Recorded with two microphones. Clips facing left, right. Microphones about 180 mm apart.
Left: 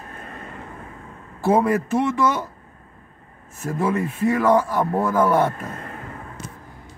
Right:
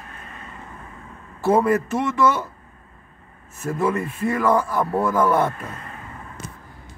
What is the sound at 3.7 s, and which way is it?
Speech, 5° left (ahead or behind).